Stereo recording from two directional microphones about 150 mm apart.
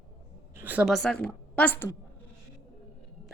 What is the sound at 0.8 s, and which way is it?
A woman's voice, centre (ahead or behind).